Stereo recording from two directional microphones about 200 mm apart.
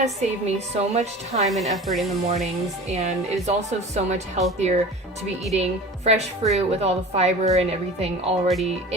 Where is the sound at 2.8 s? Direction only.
35° right (ahead or behind).